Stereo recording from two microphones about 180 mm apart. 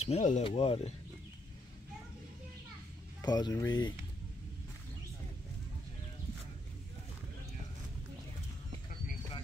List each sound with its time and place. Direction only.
0.0 s speech: 40° left (ahead or behind)
3.2 s speech: 20° left (ahead or behind)